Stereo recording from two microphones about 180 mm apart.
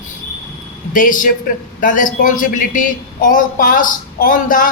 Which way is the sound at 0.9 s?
45° left (ahead or behind).